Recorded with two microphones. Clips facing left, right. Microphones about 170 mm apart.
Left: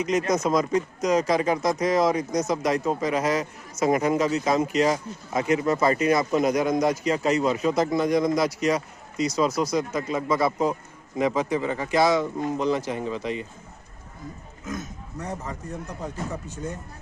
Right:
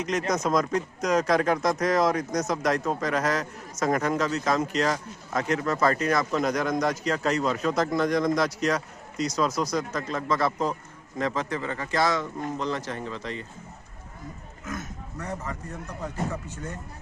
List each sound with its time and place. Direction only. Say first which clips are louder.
0.0 s speech: left 3 dB; 5° left (ahead or behind)
14.6 s speech: left 2 dB; 15° left (ahead or behind)